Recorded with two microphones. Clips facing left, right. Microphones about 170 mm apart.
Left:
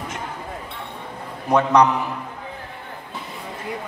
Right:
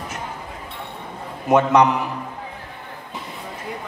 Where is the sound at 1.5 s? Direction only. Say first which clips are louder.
Right 1 dB; 20° right (ahead or behind).